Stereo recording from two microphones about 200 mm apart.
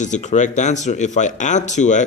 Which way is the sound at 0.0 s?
35° left (ahead or behind).